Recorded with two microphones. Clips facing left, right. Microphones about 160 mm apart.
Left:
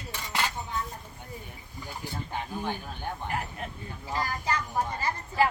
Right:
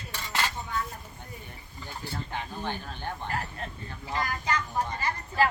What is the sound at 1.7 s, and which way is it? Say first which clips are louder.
Speech: even; 10° left (ahead or behind).